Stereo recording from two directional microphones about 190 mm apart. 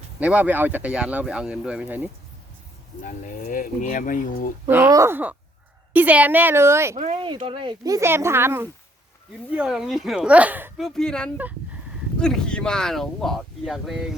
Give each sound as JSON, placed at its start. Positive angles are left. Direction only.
{"t": 0.2, "sound": "speech", "side_deg": -5}
{"t": 3.0, "sound": "speech", "side_deg": 40}
{"t": 4.7, "sound": "speech", "side_deg": -15}
{"t": 6.9, "sound": "speech", "side_deg": -35}
{"t": 10.8, "sound": "speech", "side_deg": 5}
{"t": 11.3, "sound": "a sound", "side_deg": -10}
{"t": 12.2, "sound": "speech", "side_deg": 5}